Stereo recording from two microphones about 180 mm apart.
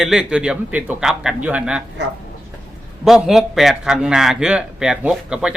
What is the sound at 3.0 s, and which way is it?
A man's voice, centre (ahead or behind).